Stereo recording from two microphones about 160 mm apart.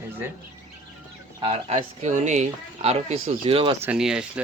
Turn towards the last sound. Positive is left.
turn(degrees=-5)  # may be behind; listen again after turning